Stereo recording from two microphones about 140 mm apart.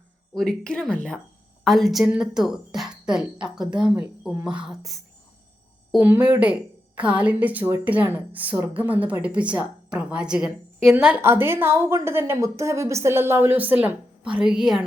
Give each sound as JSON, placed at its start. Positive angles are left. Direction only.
{"t": 0.3, "sound": "speech", "side_deg": 5}
{"t": 6.0, "sound": "a woman's voice", "side_deg": -10}